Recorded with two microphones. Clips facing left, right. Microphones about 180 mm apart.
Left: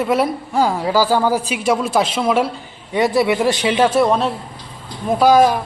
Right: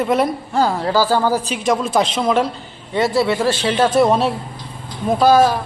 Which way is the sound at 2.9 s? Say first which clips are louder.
Left 1 dB; 15° left (ahead or behind).